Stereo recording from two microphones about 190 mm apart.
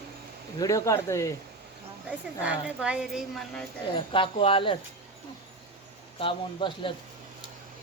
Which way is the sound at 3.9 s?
25° left (ahead or behind).